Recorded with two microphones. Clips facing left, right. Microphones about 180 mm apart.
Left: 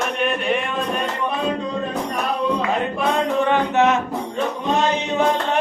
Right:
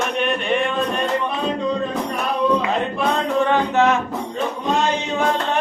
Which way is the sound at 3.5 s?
20° left (ahead or behind).